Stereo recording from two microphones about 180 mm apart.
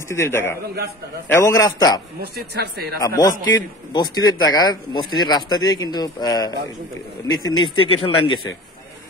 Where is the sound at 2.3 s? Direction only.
60° right (ahead or behind).